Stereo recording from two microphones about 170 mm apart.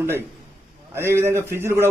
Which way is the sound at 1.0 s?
15° right (ahead or behind).